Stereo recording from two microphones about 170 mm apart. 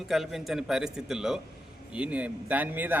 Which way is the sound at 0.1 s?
Centre (ahead or behind).